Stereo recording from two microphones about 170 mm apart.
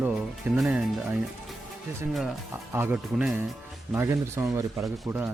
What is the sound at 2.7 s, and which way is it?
Speech, 10° right (ahead or behind).